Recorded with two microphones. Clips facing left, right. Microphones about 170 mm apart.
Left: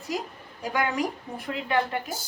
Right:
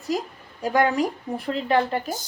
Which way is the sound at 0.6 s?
40° right (ahead or behind).